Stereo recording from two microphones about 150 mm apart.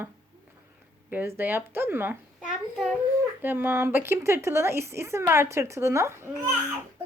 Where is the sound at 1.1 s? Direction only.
15° right (ahead or behind).